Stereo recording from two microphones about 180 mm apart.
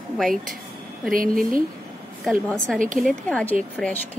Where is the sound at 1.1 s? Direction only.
50° right (ahead or behind).